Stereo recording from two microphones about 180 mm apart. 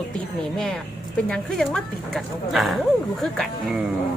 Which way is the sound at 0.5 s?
5° left (ahead or behind).